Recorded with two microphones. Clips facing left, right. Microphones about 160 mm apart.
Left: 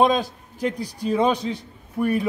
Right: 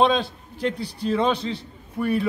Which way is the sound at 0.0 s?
10° left (ahead or behind).